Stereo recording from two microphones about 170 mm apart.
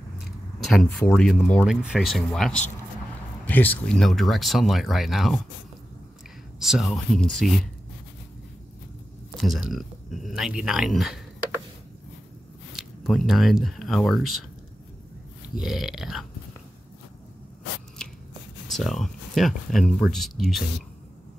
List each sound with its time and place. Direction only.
0.2 s a sound: centre (ahead or behind)
1.1 s speech: 5° left (ahead or behind)
6.6 s speech: centre (ahead or behind)
9.4 s speech: centre (ahead or behind)
12.7 s speech: centre (ahead or behind)
15.6 s speech: centre (ahead or behind)
18.0 s a sound: 5° left (ahead or behind)
18.7 s speech: centre (ahead or behind)